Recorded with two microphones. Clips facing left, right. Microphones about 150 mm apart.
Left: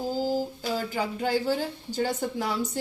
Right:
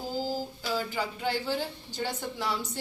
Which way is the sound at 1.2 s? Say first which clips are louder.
Left 5 dB; 45° left (ahead or behind).